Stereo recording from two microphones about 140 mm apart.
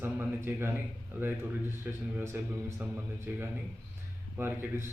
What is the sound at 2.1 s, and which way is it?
A man's voice, 15° right (ahead or behind).